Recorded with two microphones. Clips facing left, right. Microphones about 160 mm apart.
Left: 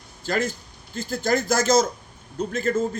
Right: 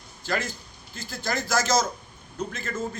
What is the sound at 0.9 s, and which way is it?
Speech, 50° left (ahead or behind).